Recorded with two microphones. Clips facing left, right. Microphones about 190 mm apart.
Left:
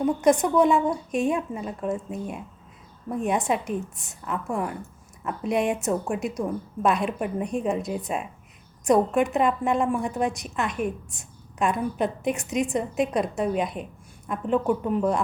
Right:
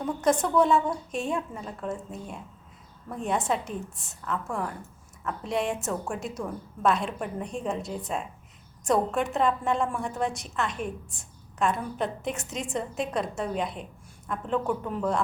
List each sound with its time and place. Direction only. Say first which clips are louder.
0.0 s a woman's voice: left 5 dB; 15° left (ahead or behind)